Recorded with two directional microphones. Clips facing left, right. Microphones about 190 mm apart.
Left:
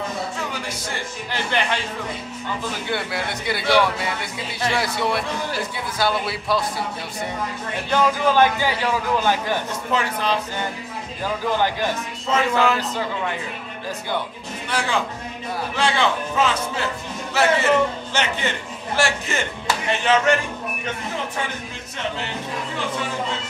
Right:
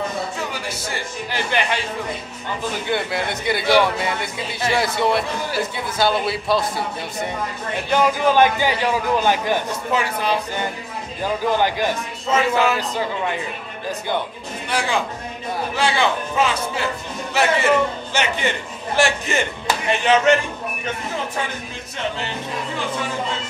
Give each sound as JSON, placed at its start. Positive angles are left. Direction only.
{"t": 0.4, "sound": "a man's voice", "side_deg": -5}
{"t": 2.9, "sound": "a man's voice", "side_deg": -20}
{"t": 7.9, "sound": "a man's voice", "side_deg": -15}
{"t": 14.7, "sound": "a man's voice", "side_deg": -15}